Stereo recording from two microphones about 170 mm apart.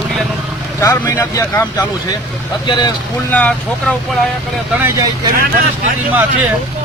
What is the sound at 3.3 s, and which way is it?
Speech, 10° left (ahead or behind).